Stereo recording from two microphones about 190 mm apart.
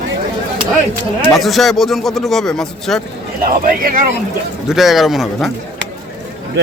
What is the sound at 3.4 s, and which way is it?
Speech, 50° right (ahead or behind).